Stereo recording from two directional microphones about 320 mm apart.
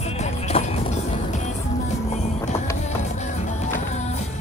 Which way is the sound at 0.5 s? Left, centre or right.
Centre.